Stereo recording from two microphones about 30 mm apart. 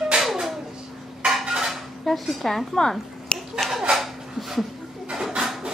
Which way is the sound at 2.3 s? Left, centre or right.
Centre.